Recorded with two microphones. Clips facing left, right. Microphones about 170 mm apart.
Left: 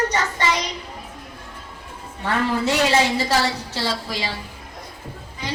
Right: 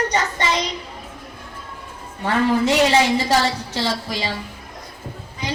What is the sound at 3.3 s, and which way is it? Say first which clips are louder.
A woman's voice: right 2 dB; 15° right (ahead or behind).